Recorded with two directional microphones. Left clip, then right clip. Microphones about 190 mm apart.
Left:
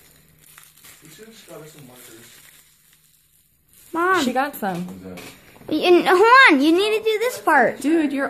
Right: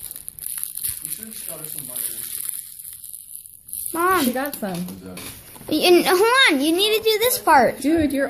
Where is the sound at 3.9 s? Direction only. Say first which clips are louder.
Left 1 dB; 5° left (ahead or behind).